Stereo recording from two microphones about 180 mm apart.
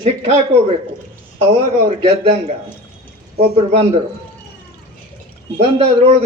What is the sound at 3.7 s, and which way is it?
Speech, 35° right (ahead or behind).